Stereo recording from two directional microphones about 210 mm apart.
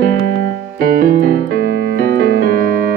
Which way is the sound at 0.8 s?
40° right (ahead or behind).